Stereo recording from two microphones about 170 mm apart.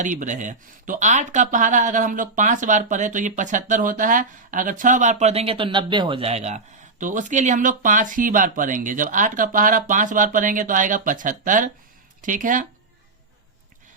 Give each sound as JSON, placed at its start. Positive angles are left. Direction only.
{"t": 0.0, "sound": "speech", "side_deg": -50}